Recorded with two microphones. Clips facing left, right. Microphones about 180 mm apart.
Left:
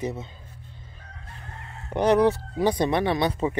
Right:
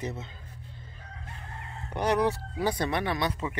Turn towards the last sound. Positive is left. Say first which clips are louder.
# left 6 dB
turn(degrees=30)  # may be behind; listen again after turning